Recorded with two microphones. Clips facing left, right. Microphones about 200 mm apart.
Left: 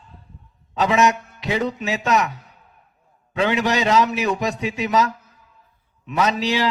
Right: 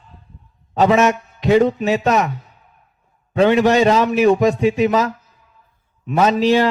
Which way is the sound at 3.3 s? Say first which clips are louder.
Right 7 dB; 45° right (ahead or behind).